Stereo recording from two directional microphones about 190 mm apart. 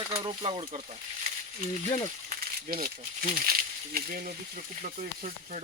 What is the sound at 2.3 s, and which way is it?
Speech, 50° right (ahead or behind).